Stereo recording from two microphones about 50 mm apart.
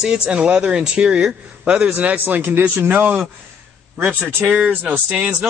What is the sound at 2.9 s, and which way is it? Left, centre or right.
Speech, right.